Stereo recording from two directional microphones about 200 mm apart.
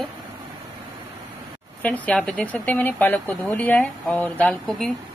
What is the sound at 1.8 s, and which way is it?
Speech, 5° left (ahead or behind).